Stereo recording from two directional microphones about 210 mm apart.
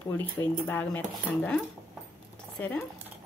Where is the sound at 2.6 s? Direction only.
10° left (ahead or behind).